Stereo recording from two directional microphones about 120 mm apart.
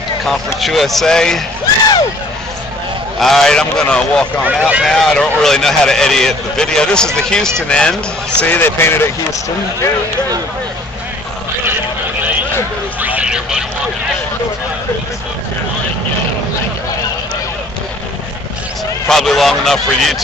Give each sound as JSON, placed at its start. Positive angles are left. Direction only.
{"t": 0.6, "sound": "speech", "side_deg": 0}
{"t": 3.2, "sound": "speech", "side_deg": 0}
{"t": 4.5, "sound": "speech", "side_deg": -10}
{"t": 4.8, "sound": "speech", "side_deg": 0}
{"t": 13.0, "sound": "vehicle", "side_deg": -10}
{"t": 19.0, "sound": "speech", "side_deg": 0}